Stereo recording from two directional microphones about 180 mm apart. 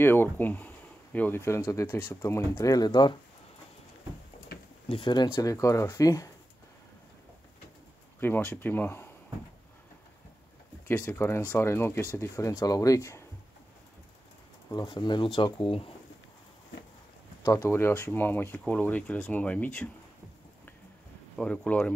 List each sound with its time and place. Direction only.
0.0 s speech: 10° left (ahead or behind)
4.8 s speech: 30° left (ahead or behind)
8.2 s speech: 10° left (ahead or behind)
10.9 s speech: 10° left (ahead or behind)
14.7 s speech: 20° left (ahead or behind)
17.4 s speech: 20° left (ahead or behind)
21.4 s speech: 5° left (ahead or behind)